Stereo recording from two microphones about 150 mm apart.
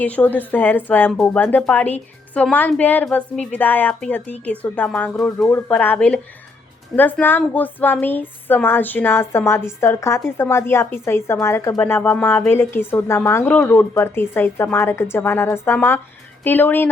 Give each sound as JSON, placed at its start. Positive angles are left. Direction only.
{"t": 0.0, "sound": "a woman's voice", "side_deg": 10}